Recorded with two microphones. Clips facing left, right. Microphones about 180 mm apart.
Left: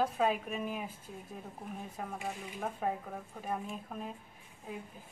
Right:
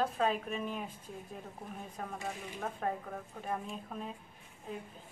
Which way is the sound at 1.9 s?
5° left (ahead or behind).